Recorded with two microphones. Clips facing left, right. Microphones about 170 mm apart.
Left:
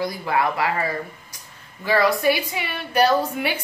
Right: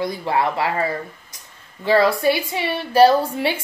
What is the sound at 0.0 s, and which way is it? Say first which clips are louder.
Speech: right 2 dB; 30° right (ahead or behind).